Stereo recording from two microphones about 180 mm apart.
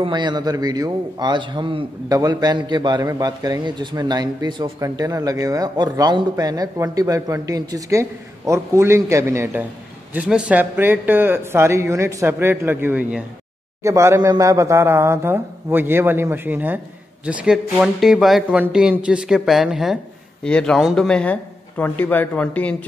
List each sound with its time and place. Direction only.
0.0 s a man's voice: 25° right (ahead or behind); by 22.8 s 10° left (ahead or behind)